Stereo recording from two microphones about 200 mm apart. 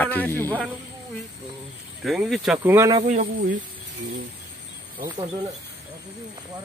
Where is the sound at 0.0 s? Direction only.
10° left (ahead or behind).